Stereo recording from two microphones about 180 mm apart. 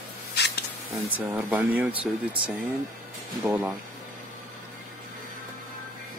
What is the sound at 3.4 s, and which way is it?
Speech, 10° right (ahead or behind).